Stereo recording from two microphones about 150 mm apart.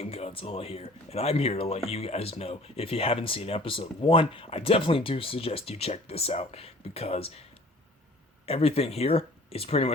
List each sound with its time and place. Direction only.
0.0 s speech: 40° left (ahead or behind)
8.4 s speech: 40° left (ahead or behind)